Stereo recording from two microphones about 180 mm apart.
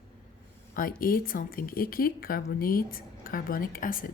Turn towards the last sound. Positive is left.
turn(degrees=50)  # may be behind; listen again after turning